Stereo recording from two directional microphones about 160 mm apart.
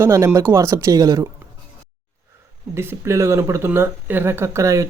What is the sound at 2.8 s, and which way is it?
Speech, 15° right (ahead or behind).